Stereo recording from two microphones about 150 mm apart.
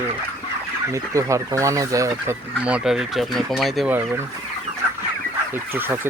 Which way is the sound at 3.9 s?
15° right (ahead or behind).